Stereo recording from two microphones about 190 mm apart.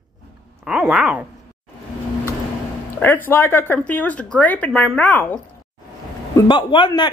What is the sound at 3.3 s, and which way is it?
A woman's voice, 10° left (ahead or behind).